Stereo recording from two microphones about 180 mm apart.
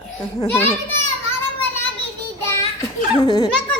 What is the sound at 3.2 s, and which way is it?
Speech, 25° left (ahead or behind).